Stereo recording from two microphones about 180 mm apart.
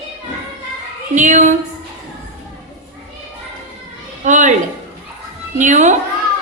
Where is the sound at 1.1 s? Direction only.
45° right (ahead or behind).